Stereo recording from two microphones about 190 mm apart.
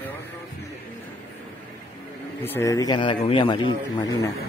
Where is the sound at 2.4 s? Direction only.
15° left (ahead or behind).